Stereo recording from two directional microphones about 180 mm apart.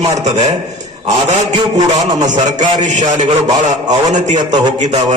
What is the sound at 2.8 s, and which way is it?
A man's voice, 40° right (ahead or behind).